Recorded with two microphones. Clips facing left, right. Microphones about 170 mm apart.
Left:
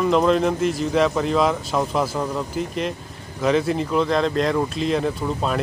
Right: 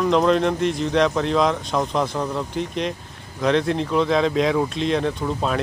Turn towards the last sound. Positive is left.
turn(degrees=0)  # may be behind; listen again after turning